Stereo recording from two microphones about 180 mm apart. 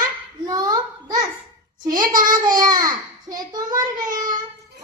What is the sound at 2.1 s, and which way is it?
Child singing, 25° right (ahead or behind).